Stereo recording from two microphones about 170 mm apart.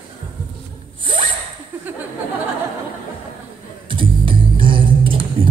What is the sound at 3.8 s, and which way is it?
Music, 30° right (ahead or behind).